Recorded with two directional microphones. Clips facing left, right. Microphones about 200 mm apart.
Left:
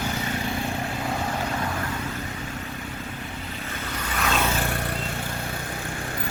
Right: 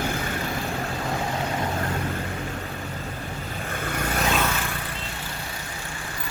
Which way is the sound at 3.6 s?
50° right (ahead or behind).